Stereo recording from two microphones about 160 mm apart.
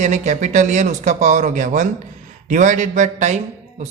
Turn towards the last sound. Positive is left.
turn(degrees=-50)  # may be behind; listen again after turning